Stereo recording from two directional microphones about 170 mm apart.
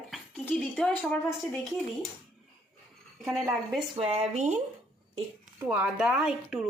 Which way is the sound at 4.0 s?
40° right (ahead or behind).